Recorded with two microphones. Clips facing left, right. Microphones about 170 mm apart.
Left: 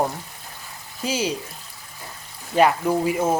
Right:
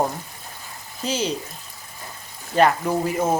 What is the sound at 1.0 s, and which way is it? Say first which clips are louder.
Speech: even; 10° left (ahead or behind).